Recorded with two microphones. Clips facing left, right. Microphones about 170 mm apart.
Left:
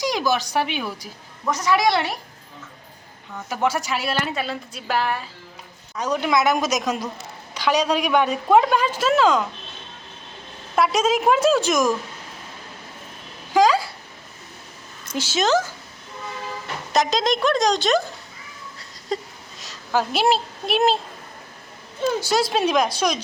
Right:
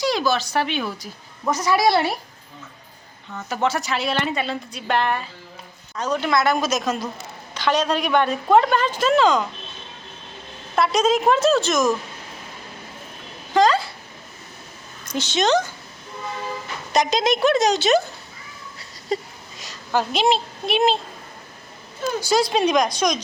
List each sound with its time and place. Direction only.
0.0 s a woman's voice: 15° left (ahead or behind)
1.5 s a woman's voice: 5° right (ahead or behind)
3.3 s a woman's voice: 10° left (ahead or behind)
10.8 s a woman's voice: 10° left (ahead or behind)
13.5 s a sound: 5° left (ahead or behind)
15.1 s a woman's voice: 5° left (ahead or behind)
16.9 s a woman's voice: centre (ahead or behind)
18.8 s a sound: 5° right (ahead or behind)
22.3 s a woman's voice: centre (ahead or behind)